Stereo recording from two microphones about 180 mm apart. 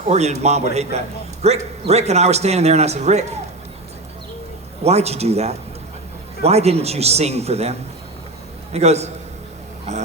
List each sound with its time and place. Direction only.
0.0 s a man's voice: 35° right (ahead or behind)
4.8 s a man's voice: 35° right (ahead or behind)